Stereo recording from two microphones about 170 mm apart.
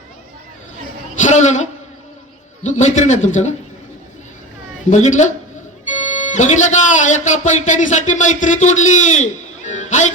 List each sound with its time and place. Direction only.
1.2 s a man's voice: 45° left (ahead or behind)
2.6 s a man's voice: 45° left (ahead or behind)
4.9 s a man's voice: 45° left (ahead or behind)